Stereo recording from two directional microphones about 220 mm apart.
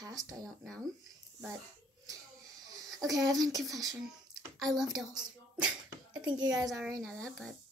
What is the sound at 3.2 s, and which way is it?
Speech, 15° right (ahead or behind).